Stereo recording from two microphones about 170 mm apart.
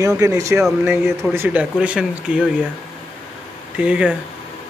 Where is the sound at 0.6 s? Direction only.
5° right (ahead or behind).